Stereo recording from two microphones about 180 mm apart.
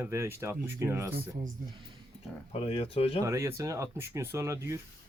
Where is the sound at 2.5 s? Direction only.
35° left (ahead or behind).